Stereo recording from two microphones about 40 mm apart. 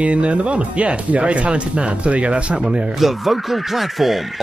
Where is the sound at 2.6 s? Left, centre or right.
Centre.